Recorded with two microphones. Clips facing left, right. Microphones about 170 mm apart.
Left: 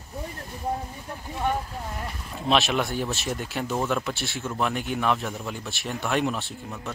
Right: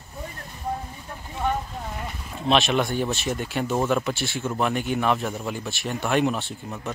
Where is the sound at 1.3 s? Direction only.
5° left (ahead or behind).